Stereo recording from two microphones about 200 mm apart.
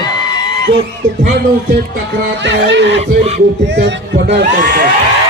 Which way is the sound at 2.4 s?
65° right (ahead or behind).